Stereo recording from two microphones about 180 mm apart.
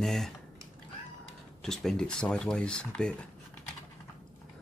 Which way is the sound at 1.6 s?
Centre (ahead or behind).